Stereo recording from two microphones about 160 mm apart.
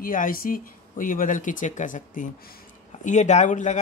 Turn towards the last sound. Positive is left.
turn(degrees=50)  # may be behind; listen again after turning